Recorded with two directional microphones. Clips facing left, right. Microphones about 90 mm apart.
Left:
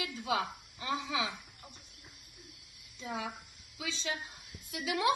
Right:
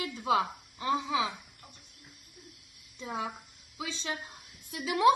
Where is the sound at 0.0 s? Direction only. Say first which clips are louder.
Right 5 dB; 40° right (ahead or behind).